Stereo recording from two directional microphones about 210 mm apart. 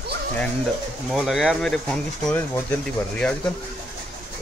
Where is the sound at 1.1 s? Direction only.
Centre (ahead or behind).